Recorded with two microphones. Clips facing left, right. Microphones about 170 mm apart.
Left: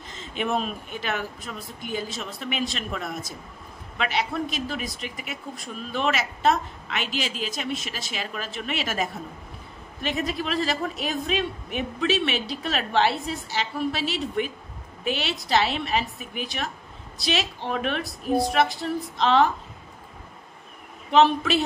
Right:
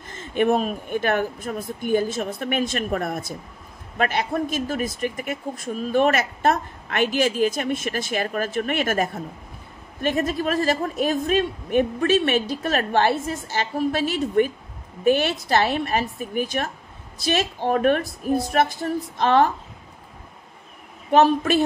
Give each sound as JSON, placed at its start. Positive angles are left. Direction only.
{"t": 0.1, "sound": "speech", "side_deg": -55}
{"t": 21.1, "sound": "speech", "side_deg": -45}